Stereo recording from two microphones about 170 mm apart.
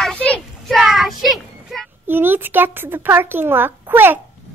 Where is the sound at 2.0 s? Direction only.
10° right (ahead or behind).